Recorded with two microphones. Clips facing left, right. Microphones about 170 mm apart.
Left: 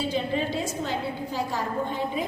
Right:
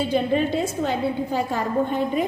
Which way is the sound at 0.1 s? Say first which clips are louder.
Right 6 dB; 60° right (ahead or behind).